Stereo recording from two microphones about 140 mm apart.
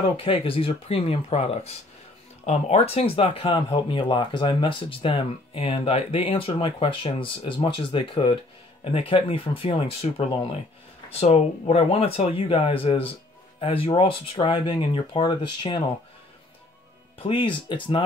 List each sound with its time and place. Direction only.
0.2 s speech: 40° left (ahead or behind)
17.2 s speech: 35° left (ahead or behind)